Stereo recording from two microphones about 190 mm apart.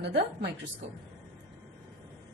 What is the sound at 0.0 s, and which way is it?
Speech, 60° right (ahead or behind).